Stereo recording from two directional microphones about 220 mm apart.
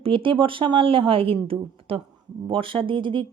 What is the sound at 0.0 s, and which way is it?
Speech, 25° right (ahead or behind).